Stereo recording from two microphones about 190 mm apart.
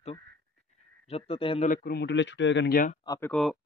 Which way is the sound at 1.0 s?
30° left (ahead or behind).